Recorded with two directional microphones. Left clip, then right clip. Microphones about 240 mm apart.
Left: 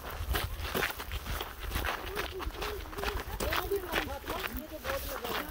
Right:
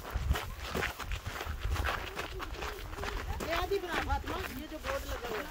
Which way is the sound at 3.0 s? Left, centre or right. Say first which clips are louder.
Left 3 dB; left.